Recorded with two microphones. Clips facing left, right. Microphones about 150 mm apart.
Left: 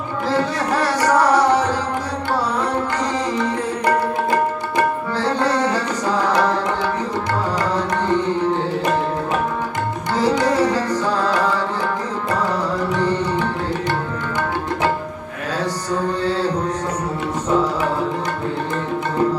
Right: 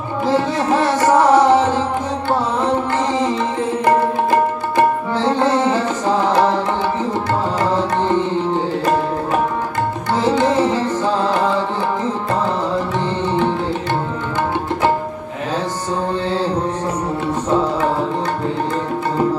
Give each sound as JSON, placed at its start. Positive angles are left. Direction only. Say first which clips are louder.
{"t": 0.3, "sound": "music", "louder": "right 3 dB", "side_deg": -20}
{"t": 3.3, "sound": "music", "louder": "right 2 dB", "side_deg": -25}
{"t": 10.2, "sound": "music", "louder": "right 1 dB", "side_deg": -25}
{"t": 12.9, "sound": "music", "louder": "even", "side_deg": -25}